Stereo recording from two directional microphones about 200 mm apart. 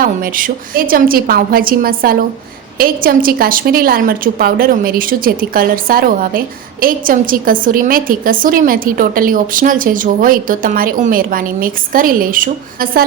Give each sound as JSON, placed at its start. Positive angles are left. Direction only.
{"t": 0.0, "sound": "a woman's voice", "side_deg": -45}